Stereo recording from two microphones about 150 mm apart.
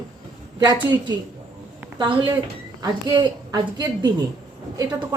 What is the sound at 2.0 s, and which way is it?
A woman's voice, 30° right (ahead or behind).